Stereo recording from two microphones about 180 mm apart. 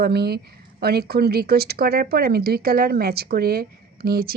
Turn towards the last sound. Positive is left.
turn(degrees=-60)  # may be behind; listen again after turning